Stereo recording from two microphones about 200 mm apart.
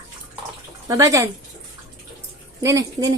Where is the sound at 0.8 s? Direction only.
15° right (ahead or behind).